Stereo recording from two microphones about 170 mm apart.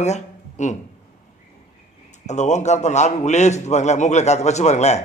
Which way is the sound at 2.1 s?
45° left (ahead or behind).